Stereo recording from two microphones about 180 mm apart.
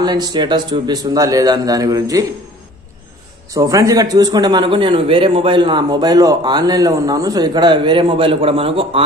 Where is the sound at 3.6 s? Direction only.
20° right (ahead or behind).